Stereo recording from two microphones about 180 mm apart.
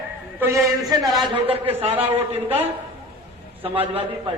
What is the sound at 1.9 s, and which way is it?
Speech, 10° right (ahead or behind).